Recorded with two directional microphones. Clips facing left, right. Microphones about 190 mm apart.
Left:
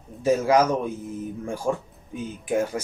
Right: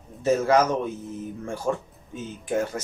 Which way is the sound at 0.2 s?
10° left (ahead or behind).